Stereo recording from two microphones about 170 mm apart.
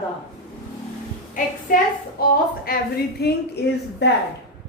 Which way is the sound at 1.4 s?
50° left (ahead or behind).